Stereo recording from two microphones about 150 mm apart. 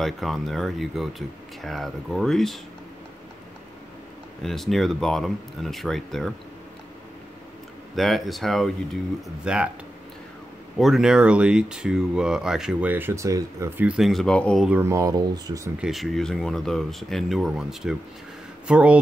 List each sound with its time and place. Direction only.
0.0 s speech: centre (ahead or behind)
4.4 s speech: centre (ahead or behind)
7.9 s speech: centre (ahead or behind)
10.8 s speech: centre (ahead or behind)
13.9 s speech: centre (ahead or behind)
14.7 s speech: 15° right (ahead or behind)
15.8 s speech: centre (ahead or behind)